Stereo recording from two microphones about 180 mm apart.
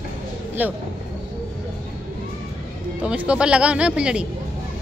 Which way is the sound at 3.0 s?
5° right (ahead or behind).